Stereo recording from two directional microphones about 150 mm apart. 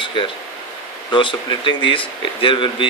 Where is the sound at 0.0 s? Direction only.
35° left (ahead or behind).